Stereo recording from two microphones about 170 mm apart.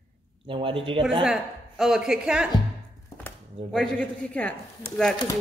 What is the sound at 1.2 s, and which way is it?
A woman's voice, 5° right (ahead or behind).